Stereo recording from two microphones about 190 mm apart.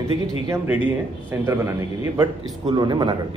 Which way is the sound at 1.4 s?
15° right (ahead or behind).